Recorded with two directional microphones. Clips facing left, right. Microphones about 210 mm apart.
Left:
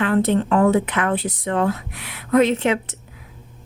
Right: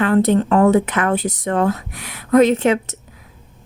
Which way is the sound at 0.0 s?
40° right (ahead or behind).